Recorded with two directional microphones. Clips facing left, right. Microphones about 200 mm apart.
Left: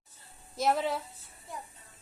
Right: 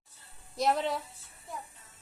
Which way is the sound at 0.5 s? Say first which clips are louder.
Even; centre (ahead or behind).